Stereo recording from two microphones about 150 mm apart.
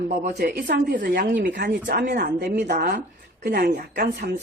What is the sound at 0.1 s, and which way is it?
A woman's voice, 80° right.